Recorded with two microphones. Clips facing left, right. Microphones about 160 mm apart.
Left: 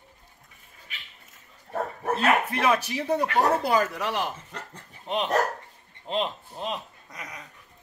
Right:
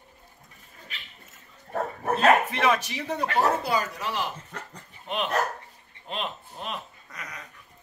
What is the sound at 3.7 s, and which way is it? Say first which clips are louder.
Speech: left 3 dB; 70° left (ahead or behind).